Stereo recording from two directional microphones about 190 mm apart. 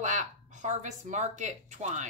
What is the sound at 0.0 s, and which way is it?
Speech, 40° right (ahead or behind).